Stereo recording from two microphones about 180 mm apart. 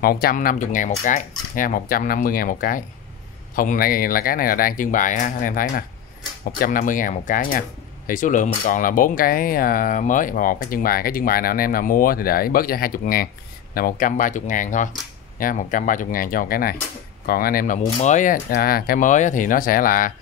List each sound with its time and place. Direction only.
0.0 s speech: 55° left (ahead or behind)